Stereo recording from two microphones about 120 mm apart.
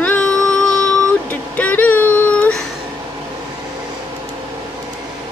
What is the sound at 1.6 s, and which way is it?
Child singing, 15° left (ahead or behind).